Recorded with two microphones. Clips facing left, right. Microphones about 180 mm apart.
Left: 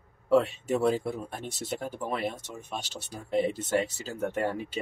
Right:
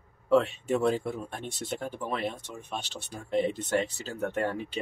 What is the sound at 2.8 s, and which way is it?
Speech, 40° left (ahead or behind).